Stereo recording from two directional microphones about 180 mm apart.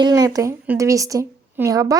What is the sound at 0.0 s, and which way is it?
A woman's voice, 20° right (ahead or behind).